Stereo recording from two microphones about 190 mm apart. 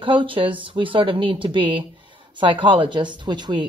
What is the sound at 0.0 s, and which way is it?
Speech, 25° right (ahead or behind).